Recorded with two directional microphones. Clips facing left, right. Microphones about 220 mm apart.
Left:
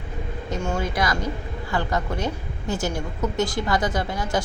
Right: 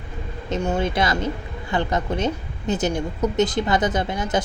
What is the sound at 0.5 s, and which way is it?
A woman's voice, 20° right (ahead or behind).